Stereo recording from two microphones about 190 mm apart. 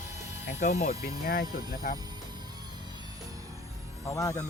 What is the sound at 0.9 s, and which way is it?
Speech, 50° left (ahead or behind).